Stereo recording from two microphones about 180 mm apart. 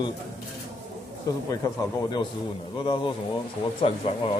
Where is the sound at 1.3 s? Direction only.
20° left (ahead or behind).